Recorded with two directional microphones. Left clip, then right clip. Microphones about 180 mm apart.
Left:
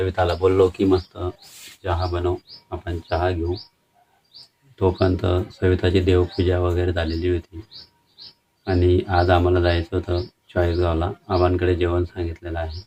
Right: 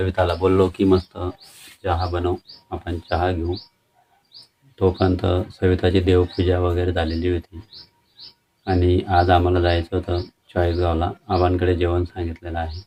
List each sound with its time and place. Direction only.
0.0 s speech: 20° right (ahead or behind)
4.8 s speech: 20° right (ahead or behind)
8.6 s speech: 20° right (ahead or behind)